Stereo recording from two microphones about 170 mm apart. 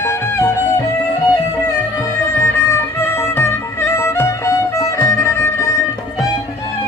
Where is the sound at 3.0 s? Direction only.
15° left (ahead or behind).